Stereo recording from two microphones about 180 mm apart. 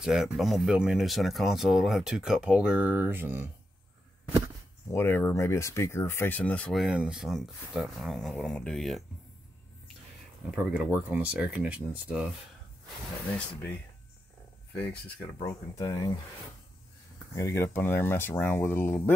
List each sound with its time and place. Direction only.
0.0 s speech: 5° right (ahead or behind)
4.9 s speech: 10° left (ahead or behind)
10.5 s speech: 10° right (ahead or behind)
15.4 s speech: 20° left (ahead or behind)
17.4 s speech: 15° left (ahead or behind)